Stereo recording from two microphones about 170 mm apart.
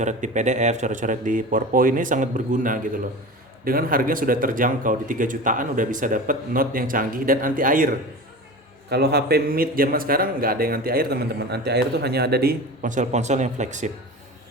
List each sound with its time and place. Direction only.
0.0 s speech: 45° right (ahead or behind)
8.9 s speech: 70° right (ahead or behind); by 13.9 s 45° right (ahead or behind)